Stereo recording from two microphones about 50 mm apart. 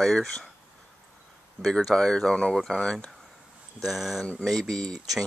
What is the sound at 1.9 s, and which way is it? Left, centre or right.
Speech, centre.